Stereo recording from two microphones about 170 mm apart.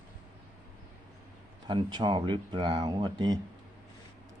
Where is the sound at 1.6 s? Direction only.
25° right (ahead or behind).